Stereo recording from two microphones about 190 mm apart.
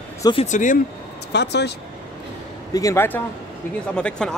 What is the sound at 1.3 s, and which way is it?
Speech, 65° left (ahead or behind).